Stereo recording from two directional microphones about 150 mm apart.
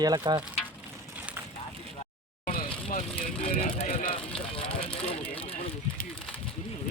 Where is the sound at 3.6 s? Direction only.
40° left (ahead or behind).